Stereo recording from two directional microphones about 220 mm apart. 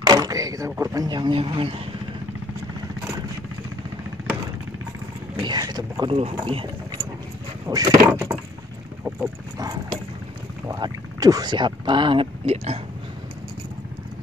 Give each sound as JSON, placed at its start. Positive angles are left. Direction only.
{"t": 0.0, "sound": "speech", "side_deg": -15}
{"t": 5.4, "sound": "speech", "side_deg": -20}
{"t": 6.4, "sound": "a sound", "side_deg": -20}
{"t": 7.6, "sound": "speech", "side_deg": -15}
{"t": 8.1, "sound": "wood", "side_deg": -10}
{"t": 10.7, "sound": "speech", "side_deg": -15}